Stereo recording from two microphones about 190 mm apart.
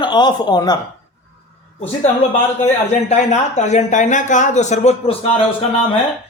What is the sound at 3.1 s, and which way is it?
Speech, 35° left (ahead or behind).